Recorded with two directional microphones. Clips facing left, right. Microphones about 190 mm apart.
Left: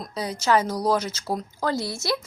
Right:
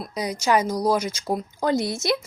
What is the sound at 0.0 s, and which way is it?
Speech, 15° right (ahead or behind).